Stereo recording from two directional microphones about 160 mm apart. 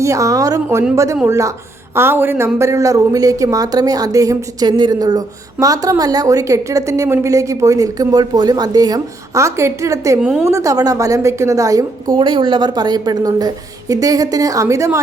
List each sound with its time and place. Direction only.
0.0 s speech: 20° right (ahead or behind)
10.2 s a woman's voice: 5° right (ahead or behind)
10.4 s speech: 20° right (ahead or behind)
12.1 s speech: 30° right (ahead or behind)